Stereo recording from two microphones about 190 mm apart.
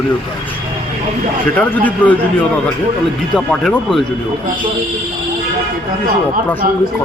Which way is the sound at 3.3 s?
5° left (ahead or behind).